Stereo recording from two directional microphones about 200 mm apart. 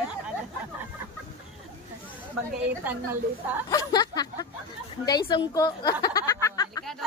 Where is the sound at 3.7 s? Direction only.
20° left (ahead or behind).